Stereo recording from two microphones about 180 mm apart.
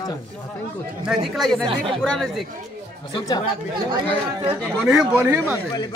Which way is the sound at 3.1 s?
25° left (ahead or behind).